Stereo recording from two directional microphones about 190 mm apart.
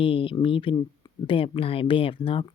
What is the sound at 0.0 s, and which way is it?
Speech, 30° left (ahead or behind).